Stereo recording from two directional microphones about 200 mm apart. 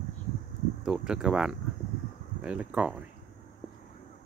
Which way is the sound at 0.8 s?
5° right (ahead or behind).